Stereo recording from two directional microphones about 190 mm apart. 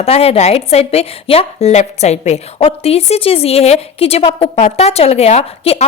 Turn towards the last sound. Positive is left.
turn(degrees=35)  # may be behind; listen again after turning